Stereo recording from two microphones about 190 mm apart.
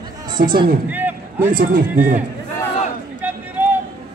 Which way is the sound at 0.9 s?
10° right (ahead or behind).